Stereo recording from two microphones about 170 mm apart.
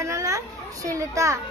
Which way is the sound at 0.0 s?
20° right (ahead or behind).